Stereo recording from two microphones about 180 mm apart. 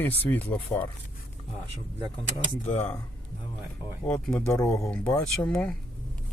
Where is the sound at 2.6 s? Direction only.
35° left (ahead or behind).